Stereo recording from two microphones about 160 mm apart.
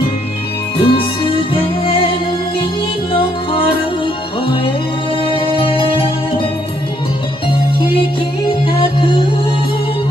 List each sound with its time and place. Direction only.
0.7 s music: 35° left (ahead or behind)
5.2 s music: 35° left (ahead or behind)
8.6 s music: 30° left (ahead or behind)